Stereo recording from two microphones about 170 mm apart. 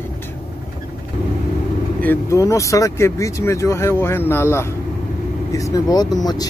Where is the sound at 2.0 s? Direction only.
15° left (ahead or behind).